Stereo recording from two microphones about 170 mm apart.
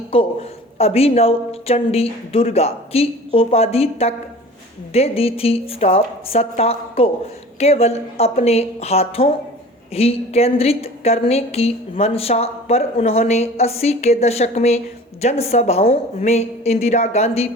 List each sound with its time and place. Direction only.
0.1 s a woman's voice: 35° left (ahead or behind)